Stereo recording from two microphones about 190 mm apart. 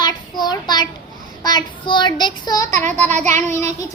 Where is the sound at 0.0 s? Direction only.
20° left (ahead or behind).